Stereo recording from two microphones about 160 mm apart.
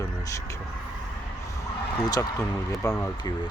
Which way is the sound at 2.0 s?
25° left (ahead or behind).